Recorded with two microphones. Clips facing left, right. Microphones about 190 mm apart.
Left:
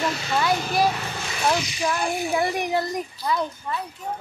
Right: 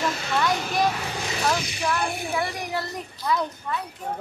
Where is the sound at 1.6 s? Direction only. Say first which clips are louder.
Left 1 dB; 60° right (ahead or behind).